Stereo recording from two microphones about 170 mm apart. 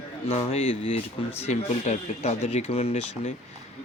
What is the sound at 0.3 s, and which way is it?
Speech, 35° left (ahead or behind).